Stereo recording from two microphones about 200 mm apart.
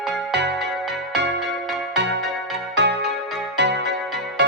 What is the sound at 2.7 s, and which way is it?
Music, 60° right (ahead or behind).